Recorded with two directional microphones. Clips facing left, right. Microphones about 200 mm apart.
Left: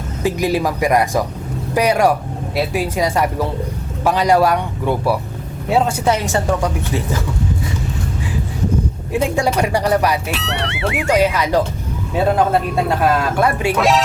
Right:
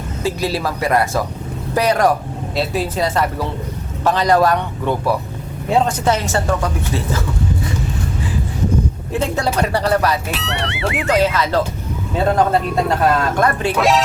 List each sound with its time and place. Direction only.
0.2 s speech: 15° left (ahead or behind)
9.1 s speech: 10° left (ahead or behind)
10.3 s speech: centre (ahead or behind)
11.0 s speech: 10° left (ahead or behind)
13.7 s speech: centre (ahead or behind)